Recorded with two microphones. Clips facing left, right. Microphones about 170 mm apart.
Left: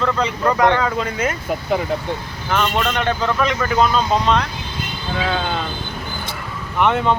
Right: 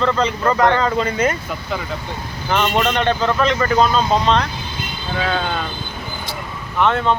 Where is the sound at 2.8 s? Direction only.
5° left (ahead or behind).